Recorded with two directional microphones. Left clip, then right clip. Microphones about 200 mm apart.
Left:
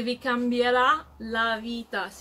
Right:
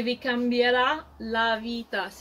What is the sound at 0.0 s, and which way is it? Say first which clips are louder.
A woman's voice: even; centre (ahead or behind).